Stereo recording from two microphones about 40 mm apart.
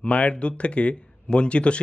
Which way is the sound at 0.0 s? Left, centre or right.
Left.